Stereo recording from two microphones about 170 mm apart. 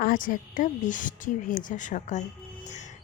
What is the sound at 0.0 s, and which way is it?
A woman's voice, 55° left (ahead or behind).